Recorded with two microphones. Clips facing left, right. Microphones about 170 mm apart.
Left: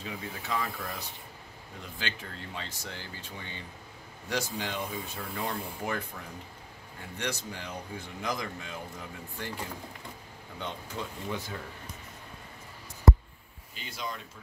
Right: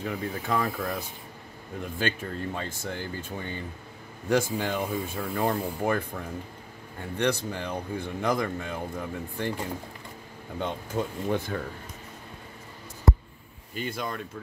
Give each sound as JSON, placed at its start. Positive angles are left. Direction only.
{"t": 0.0, "sound": "a man's voice", "side_deg": -50}
{"t": 10.6, "sound": "speech", "side_deg": -50}
{"t": 13.7, "sound": "a man's voice", "side_deg": -55}